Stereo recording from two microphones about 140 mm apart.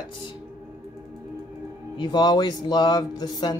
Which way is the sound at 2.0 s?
30° left (ahead or behind).